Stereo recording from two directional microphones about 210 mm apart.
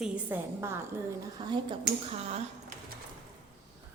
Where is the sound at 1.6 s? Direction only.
30° right (ahead or behind).